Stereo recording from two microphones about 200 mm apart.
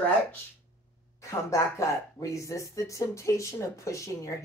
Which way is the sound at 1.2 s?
15° left (ahead or behind).